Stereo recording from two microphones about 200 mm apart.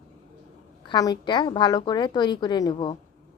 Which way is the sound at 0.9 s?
20° left (ahead or behind).